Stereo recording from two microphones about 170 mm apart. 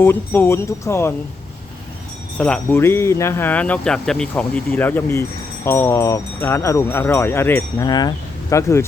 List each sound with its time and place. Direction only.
0.0 s speech: 10° left (ahead or behind)
2.4 s speech: 10° left (ahead or behind)
7.9 s speech: 25° left (ahead or behind)